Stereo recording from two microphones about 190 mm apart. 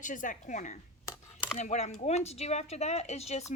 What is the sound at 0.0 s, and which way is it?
A woman's voice, 45° left (ahead or behind).